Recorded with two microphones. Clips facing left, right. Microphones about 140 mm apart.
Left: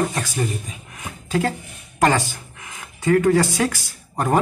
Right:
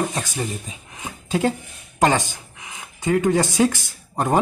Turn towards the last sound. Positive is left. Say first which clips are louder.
# even
turn(degrees=-20)  # may be behind; listen again after turning